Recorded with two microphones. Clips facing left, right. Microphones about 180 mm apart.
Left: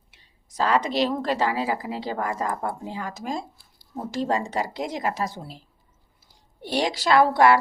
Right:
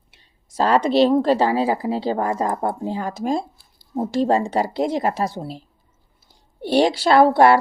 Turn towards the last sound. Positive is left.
turn(degrees=-30)  # may be behind; listen again after turning